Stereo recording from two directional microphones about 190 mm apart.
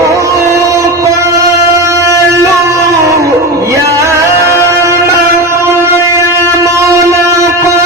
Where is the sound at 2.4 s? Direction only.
15° right (ahead or behind).